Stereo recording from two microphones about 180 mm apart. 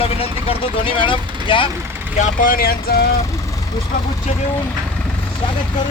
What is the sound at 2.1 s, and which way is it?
Speech, 45° left (ahead or behind).